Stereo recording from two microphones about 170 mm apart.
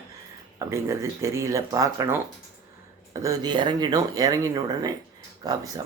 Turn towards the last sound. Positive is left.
turn(degrees=-20)  # may be behind; listen again after turning